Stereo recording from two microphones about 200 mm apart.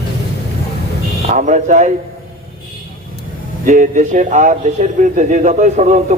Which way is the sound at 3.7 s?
40° right (ahead or behind).